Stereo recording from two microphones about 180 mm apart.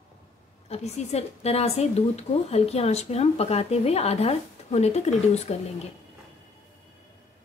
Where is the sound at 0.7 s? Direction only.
35° left (ahead or behind).